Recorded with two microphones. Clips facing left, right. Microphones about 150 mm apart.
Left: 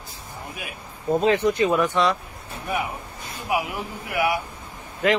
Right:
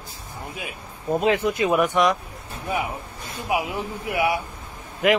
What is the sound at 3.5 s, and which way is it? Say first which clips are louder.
Speech: right 1 dB; 25° right (ahead or behind).